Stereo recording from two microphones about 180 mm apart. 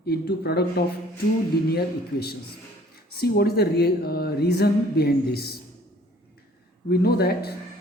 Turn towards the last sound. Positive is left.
turn(degrees=60)  # may be behind; listen again after turning